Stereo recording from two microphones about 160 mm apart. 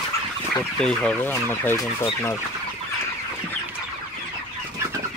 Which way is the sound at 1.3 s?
15° left (ahead or behind).